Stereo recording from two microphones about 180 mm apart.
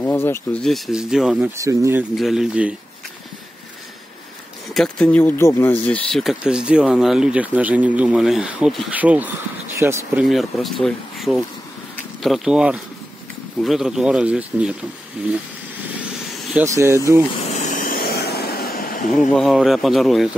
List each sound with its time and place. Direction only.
0.0 s speech: 10° left (ahead or behind); by 1.5 s 5° right (ahead or behind)
1.6 s speech: 15° right (ahead or behind)
2.1 s speech: centre (ahead or behind)
4.7 s speech: 5° left (ahead or behind); by 10.2 s 15° right (ahead or behind)
10.2 s speech: centre (ahead or behind)
16.5 s speech: 15° right (ahead or behind)
17.6 s a sound: 45° left (ahead or behind)
19.3 s speech: centre (ahead or behind)